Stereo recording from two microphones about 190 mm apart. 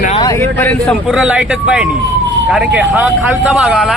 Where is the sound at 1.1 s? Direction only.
5° right (ahead or behind).